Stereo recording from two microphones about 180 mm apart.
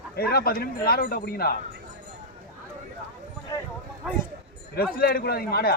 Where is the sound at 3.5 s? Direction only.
20° left (ahead or behind).